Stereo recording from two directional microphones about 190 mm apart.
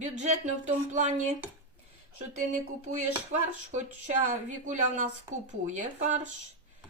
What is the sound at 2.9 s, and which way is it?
Speech, 40° right (ahead or behind).